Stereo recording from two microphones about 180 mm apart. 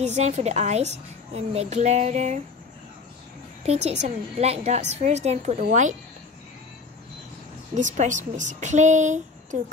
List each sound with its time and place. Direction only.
0.0 s a woman's voice: 40° right (ahead or behind)
3.6 s a woman's voice: 35° right (ahead or behind)
7.7 s a woman's voice: 45° right (ahead or behind)